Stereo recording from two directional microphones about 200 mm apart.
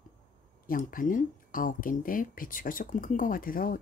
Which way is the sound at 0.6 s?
45° left (ahead or behind).